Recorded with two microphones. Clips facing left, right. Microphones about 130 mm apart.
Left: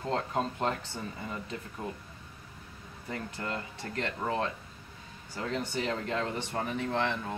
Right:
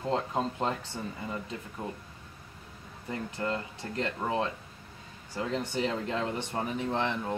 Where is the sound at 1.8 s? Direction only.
15° right (ahead or behind).